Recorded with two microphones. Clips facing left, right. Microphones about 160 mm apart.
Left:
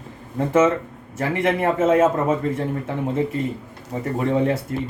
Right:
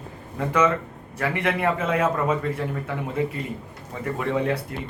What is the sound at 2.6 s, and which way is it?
Speech, 30° left (ahead or behind).